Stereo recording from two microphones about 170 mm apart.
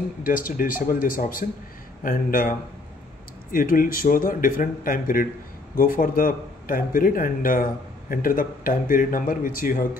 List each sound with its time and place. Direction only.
0.2 s a man's voice: 55° left (ahead or behind)
3.5 s a man's voice: 55° left (ahead or behind)